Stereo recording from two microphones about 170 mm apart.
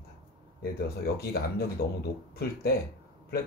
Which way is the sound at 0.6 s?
65° left (ahead or behind).